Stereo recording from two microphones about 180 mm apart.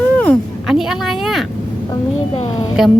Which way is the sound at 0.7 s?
Centre (ahead or behind).